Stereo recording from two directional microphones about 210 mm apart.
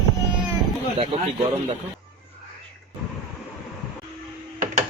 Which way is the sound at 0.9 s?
25° right (ahead or behind).